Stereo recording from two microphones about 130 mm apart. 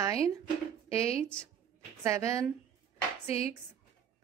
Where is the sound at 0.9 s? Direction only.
50° left (ahead or behind).